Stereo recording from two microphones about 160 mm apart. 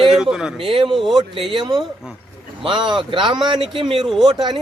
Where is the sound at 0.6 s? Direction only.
35° right (ahead or behind).